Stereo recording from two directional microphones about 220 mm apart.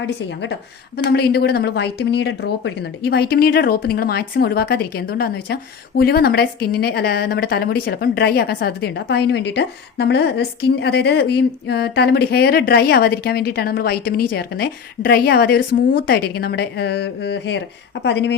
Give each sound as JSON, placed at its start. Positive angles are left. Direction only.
{"t": 0.9, "sound": "a woman's voice", "side_deg": 45}